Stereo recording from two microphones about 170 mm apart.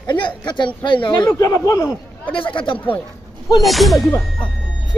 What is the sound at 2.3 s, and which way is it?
Speech, 30° left (ahead or behind).